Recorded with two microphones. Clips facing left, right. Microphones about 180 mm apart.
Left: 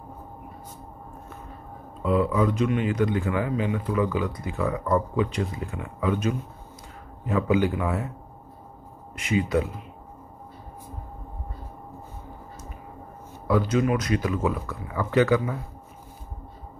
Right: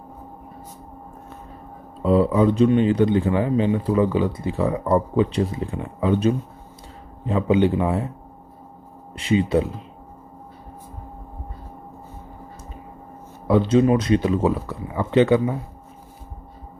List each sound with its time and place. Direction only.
2.0 s a man's voice: 30° right (ahead or behind)
9.1 s speech: 30° right (ahead or behind)
13.5 s speech: 25° right (ahead or behind)